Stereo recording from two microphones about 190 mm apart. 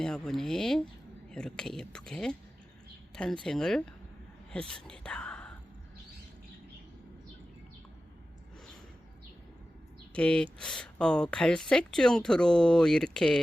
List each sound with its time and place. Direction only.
0.0 s speech: 5° left (ahead or behind)
3.4 s speech: centre (ahead or behind)
10.2 s speech: 5° left (ahead or behind)